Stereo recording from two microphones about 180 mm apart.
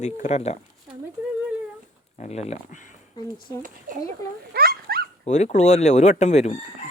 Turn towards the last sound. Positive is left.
turn(degrees=40)  # may be behind; listen again after turning